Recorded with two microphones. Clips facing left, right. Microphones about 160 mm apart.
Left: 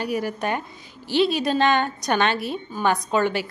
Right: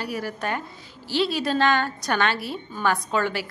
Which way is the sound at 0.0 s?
20° left (ahead or behind).